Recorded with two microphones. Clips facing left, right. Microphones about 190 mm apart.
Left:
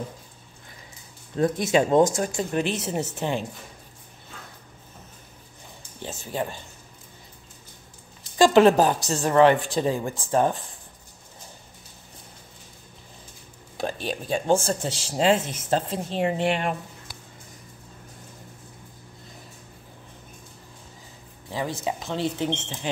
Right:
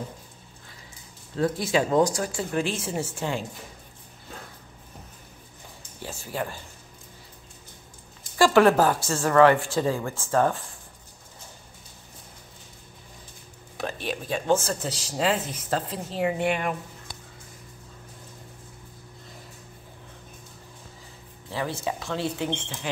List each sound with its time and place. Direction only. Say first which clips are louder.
1.3 s speech: left 3 dB; 20° left (ahead or behind)
6.0 s speech: left 2 dB; 20° left (ahead or behind)
8.4 s speech: left 2 dB; 20° left (ahead or behind)
14.0 s speech: left 1 dB; 30° left (ahead or behind)
21.5 s speech: left 1 dB; 15° left (ahead or behind)